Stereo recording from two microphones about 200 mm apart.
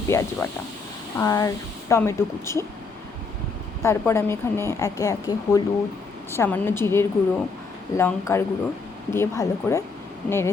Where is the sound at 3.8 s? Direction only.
15° left (ahead or behind).